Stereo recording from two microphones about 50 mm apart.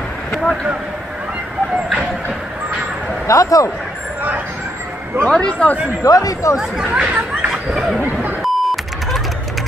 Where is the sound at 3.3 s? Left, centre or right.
Left.